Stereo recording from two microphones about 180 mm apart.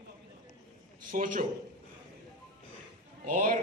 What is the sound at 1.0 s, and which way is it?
Speech, 50° right (ahead or behind).